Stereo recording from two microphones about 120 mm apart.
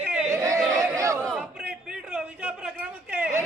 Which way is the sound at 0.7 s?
30° right (ahead or behind).